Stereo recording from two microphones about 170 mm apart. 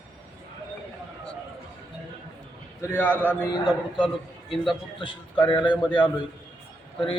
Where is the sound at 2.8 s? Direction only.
10° left (ahead or behind).